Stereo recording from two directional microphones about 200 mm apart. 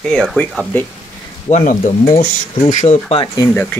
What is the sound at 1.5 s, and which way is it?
Speech, 40° left (ahead or behind).